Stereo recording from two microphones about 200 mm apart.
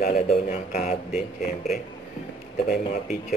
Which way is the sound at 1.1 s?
Centre (ahead or behind).